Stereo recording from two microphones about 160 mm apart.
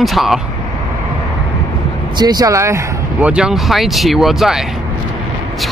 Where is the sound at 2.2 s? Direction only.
25° right (ahead or behind).